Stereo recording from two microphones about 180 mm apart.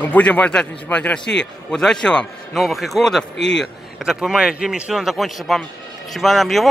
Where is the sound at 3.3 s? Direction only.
75° left (ahead or behind).